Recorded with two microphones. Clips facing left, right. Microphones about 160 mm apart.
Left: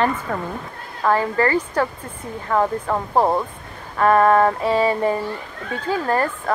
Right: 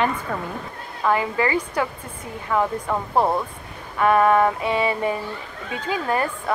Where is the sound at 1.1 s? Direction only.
15° right (ahead or behind).